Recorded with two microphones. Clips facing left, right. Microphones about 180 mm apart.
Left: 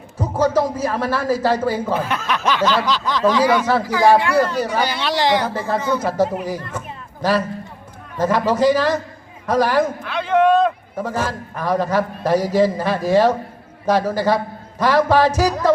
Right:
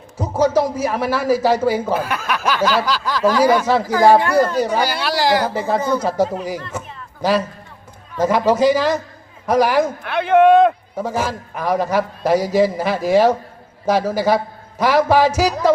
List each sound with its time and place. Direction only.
0.2 s speech: 10° right (ahead or behind)
6.7 s a sound: 10° right (ahead or behind)
8.2 s speech: 10° right (ahead or behind)
10.0 s speech: 55° right (ahead or behind)
10.9 s speech: 10° right (ahead or behind)